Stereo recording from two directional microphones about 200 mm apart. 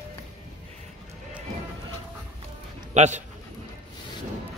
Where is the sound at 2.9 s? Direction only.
35° right (ahead or behind).